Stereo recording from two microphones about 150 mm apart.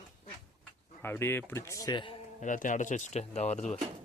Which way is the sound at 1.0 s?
15° left (ahead or behind).